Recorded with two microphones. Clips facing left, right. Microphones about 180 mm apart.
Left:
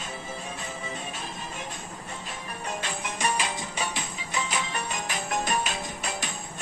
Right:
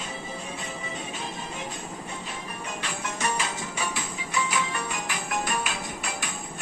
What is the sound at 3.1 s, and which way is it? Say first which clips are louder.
Music: left 1 dB; 15° left (ahead or behind).